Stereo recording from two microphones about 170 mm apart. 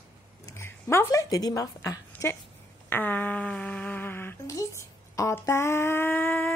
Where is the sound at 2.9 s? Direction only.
10° left (ahead or behind).